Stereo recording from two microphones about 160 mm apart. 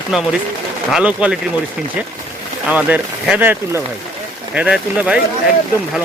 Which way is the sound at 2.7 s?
10° right (ahead or behind).